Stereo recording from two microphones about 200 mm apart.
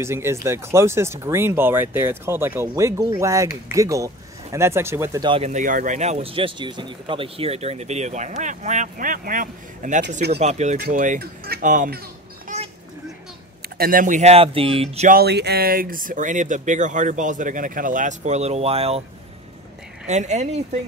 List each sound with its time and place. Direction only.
0.0 s speech: 15° right (ahead or behind); by 12.0 s 40° right (ahead or behind)
12.5 s sheep: 40° right (ahead or behind)
13.7 s speech: 45° right (ahead or behind)
15.0 s speech: 50° right (ahead or behind); by 19.0 s 30° right (ahead or behind)
20.1 s speech: 35° right (ahead or behind)